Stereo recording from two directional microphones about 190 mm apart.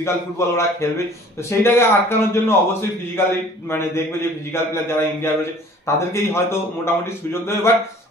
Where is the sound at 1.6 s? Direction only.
15° left (ahead or behind).